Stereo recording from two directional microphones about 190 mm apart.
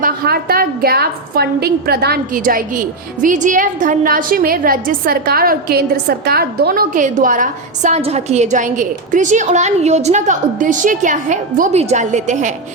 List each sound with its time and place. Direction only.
0.0 s a woman's voice: 50° right (ahead or behind)